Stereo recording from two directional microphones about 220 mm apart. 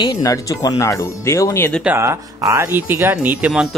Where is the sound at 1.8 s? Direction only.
10° right (ahead or behind).